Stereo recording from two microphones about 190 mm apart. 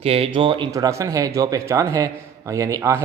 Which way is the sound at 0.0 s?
30° right (ahead or behind).